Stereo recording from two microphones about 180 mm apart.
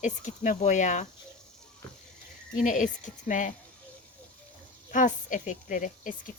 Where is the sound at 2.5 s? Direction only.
45° left (ahead or behind).